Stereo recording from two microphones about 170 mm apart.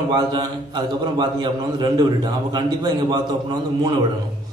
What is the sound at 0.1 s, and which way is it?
A man's voice, 25° right (ahead or behind).